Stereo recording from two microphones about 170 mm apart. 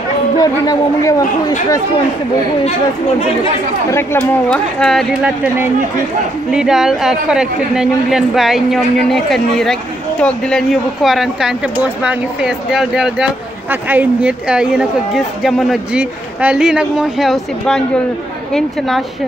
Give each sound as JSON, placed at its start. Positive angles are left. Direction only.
{"t": 0.4, "sound": "speech", "side_deg": 20}
{"t": 3.9, "sound": "speech", "side_deg": 15}
{"t": 5.2, "sound": "speech", "side_deg": -10}